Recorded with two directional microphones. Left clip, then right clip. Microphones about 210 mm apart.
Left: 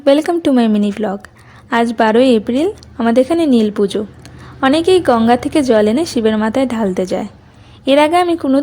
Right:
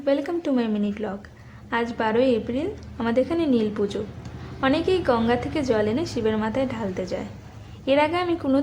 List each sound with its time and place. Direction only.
0.0 s a woman's voice: 45° left (ahead or behind)